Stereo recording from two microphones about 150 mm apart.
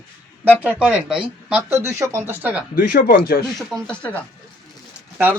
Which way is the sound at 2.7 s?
70° left (ahead or behind).